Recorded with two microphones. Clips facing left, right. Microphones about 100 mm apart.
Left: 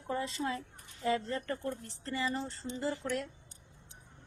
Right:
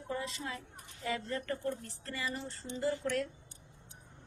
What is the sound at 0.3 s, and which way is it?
A woman's voice, 30° left (ahead or behind).